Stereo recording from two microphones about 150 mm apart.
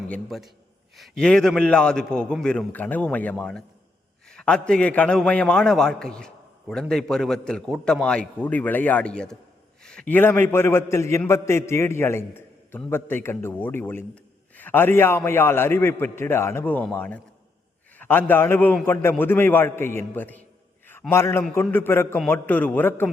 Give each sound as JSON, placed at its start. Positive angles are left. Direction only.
{"t": 0.1, "sound": "a man's voice", "side_deg": 0}